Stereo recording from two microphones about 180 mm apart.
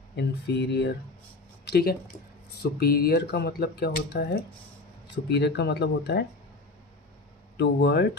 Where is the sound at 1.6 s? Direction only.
60° left (ahead or behind).